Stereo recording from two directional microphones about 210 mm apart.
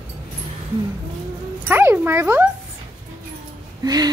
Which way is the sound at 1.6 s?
10° right (ahead or behind).